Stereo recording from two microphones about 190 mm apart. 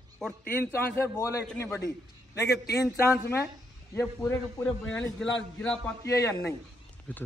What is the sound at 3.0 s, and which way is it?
A man's voice, 15° left (ahead or behind).